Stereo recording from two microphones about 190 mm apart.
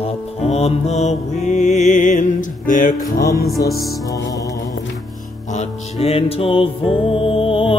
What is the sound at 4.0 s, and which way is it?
Music, 20° left (ahead or behind).